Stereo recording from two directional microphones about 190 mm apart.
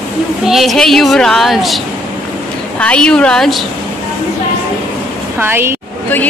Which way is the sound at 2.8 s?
5° left (ahead or behind).